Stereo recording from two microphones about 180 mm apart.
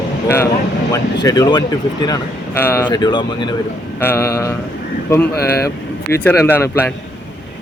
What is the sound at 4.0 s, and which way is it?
Speech, 15° left (ahead or behind).